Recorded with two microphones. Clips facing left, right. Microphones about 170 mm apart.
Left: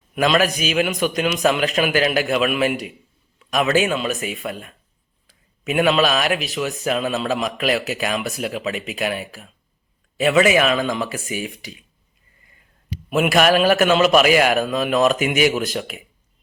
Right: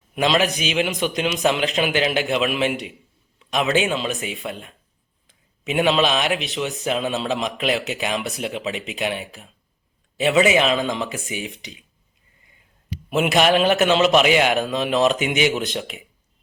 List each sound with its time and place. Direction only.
0.2 s a man's voice: 25° right (ahead or behind)
5.6 s speech: 20° right (ahead or behind)
5.9 s speech: 5° left (ahead or behind)
10.3 s speech: 25° right (ahead or behind)
13.1 s speech: 25° right (ahead or behind)
14.1 s speech: 5° left (ahead or behind)
14.3 s speech: 20° right (ahead or behind)